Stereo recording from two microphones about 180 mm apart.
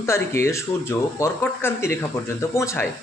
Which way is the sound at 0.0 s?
15° left (ahead or behind).